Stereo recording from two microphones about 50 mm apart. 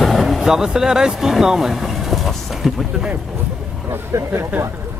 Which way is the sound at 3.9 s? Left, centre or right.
Right.